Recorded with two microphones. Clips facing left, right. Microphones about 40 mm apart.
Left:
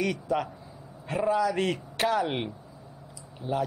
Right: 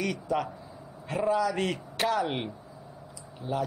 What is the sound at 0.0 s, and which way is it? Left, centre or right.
A man's voice, centre.